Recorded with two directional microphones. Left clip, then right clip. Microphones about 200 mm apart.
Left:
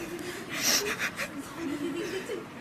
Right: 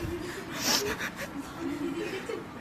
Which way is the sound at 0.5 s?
15° right (ahead or behind).